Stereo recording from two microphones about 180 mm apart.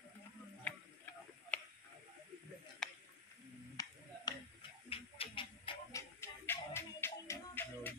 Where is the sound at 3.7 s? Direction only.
20° left (ahead or behind).